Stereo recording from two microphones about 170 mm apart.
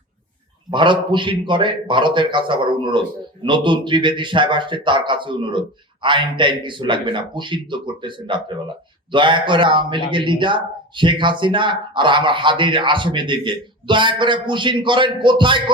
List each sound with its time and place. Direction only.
0.7 s a man's voice: 30° right (ahead or behind)